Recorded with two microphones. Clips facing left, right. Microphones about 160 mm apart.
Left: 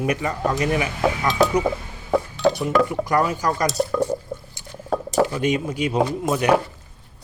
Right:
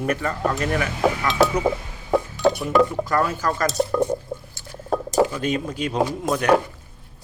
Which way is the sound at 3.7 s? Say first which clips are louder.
Right 1 dB; 20° right (ahead or behind).